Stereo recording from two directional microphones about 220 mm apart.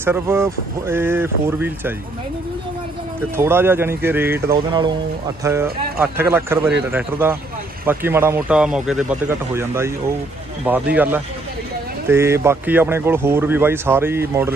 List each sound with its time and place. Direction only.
0.0 s speech: 10° right (ahead or behind)
3.3 s speech: 10° right (ahead or behind)
4.6 s speech: 20° right (ahead or behind)